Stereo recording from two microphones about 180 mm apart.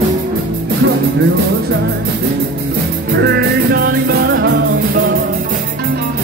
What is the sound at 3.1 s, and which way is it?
Music, 65° right (ahead or behind).